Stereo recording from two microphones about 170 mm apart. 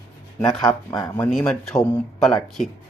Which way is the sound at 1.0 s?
5° left (ahead or behind).